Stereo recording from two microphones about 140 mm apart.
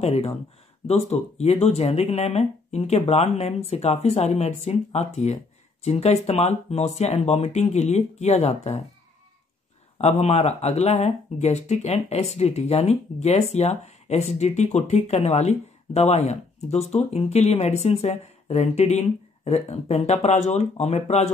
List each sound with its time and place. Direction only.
0.0 s speech: 45° left (ahead or behind)
9.9 s speech: 50° left (ahead or behind)